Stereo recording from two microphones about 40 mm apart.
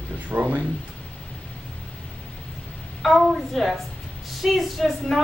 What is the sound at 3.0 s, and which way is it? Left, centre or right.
A woman's voice, centre.